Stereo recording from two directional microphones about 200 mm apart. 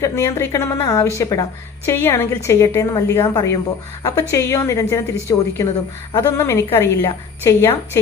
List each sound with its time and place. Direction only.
0.0 s a woman's voice: 15° left (ahead or behind)